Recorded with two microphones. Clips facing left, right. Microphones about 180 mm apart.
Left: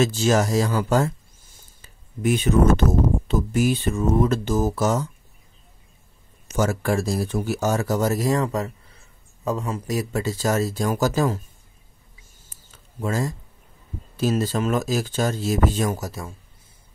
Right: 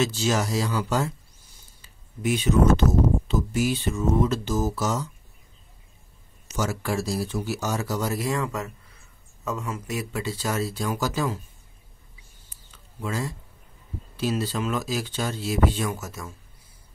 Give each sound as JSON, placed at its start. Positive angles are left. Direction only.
{"t": 0.0, "sound": "speech", "side_deg": 50}
{"t": 6.4, "sound": "speech", "side_deg": 55}
{"t": 12.5, "sound": "a sound", "side_deg": 45}
{"t": 14.1, "sound": "speech", "side_deg": 45}